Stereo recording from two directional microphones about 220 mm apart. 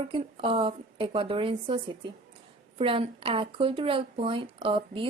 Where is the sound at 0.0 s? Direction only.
25° right (ahead or behind).